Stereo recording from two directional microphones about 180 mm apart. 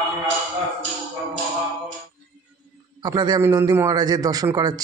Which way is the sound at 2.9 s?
20° right (ahead or behind).